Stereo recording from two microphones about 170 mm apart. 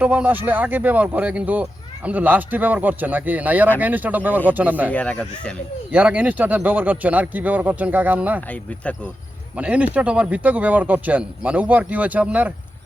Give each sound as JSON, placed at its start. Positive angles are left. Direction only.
{"t": 0.0, "sound": "speech", "side_deg": -10}
{"t": 4.9, "sound": "speech", "side_deg": 10}
{"t": 5.9, "sound": "speech", "side_deg": -10}
{"t": 9.6, "sound": "speech", "side_deg": -10}